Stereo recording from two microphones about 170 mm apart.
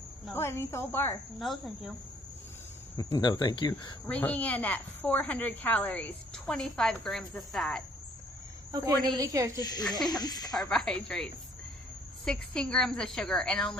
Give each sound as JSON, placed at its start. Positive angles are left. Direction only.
{"t": 0.3, "sound": "a woman's voice", "side_deg": 15}
{"t": 1.4, "sound": "a woman's voice", "side_deg": 0}
{"t": 3.0, "sound": "speech", "side_deg": 25}
{"t": 4.1, "sound": "a woman's voice", "side_deg": 10}
{"t": 8.7, "sound": "a woman's voice", "side_deg": -25}
{"t": 9.6, "sound": "speech", "side_deg": 25}
{"t": 10.7, "sound": "a woman's voice", "side_deg": 5}
{"t": 12.3, "sound": "a woman's voice", "side_deg": 5}